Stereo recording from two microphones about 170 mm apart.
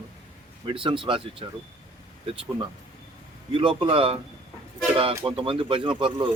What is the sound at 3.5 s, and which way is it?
Speech, 30° right (ahead or behind).